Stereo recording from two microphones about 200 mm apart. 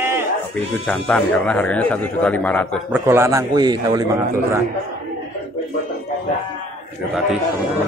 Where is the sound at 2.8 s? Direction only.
10° right (ahead or behind).